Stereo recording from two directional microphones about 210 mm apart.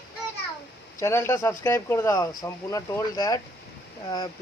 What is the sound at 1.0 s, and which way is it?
Speech, 10° left (ahead or behind).